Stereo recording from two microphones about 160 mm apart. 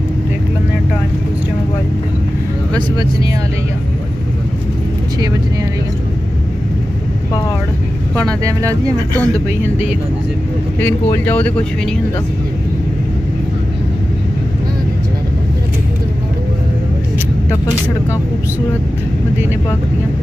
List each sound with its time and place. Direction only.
3.0 s speech: 20° right (ahead or behind)
8.5 s speech: 20° right (ahead or behind)
11.2 s speech: 10° left (ahead or behind)